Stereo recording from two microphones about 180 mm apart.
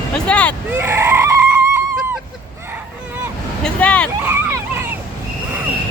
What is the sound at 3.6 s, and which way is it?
Speech, 5° left (ahead or behind).